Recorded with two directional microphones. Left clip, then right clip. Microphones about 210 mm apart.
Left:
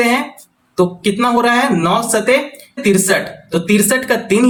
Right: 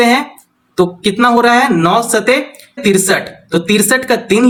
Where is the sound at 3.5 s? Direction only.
30° right (ahead or behind).